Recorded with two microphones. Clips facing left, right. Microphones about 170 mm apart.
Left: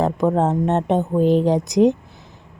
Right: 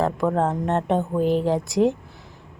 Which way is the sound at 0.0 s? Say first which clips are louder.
Left 3 dB; 20° left (ahead or behind).